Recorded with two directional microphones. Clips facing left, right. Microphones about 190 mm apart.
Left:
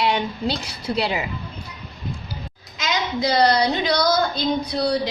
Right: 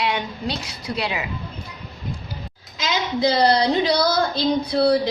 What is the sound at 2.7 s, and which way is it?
Speech, 30° right (ahead or behind).